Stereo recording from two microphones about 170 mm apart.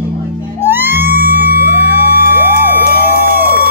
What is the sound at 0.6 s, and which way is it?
Emergency vehicle, 15° right (ahead or behind).